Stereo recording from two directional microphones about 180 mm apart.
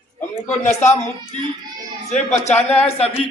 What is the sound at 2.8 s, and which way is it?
Speech, 35° left (ahead or behind).